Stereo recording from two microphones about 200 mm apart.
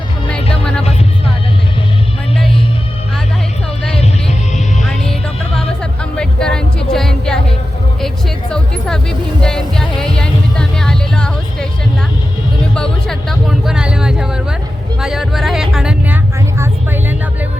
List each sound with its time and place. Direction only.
3.9 s music: 30° left (ahead or behind)
4.8 s music: centre (ahead or behind)
6.1 s music: 5° left (ahead or behind)
12.7 s a sound: 5° left (ahead or behind)
15.0 s music: centre (ahead or behind)
16.6 s vehicle: 10° right (ahead or behind)